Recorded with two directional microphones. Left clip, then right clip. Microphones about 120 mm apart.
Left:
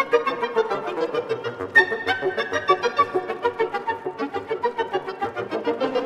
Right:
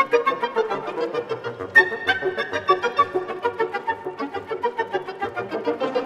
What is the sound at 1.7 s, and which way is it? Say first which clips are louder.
Music: right 1 dB; 10° left (ahead or behind).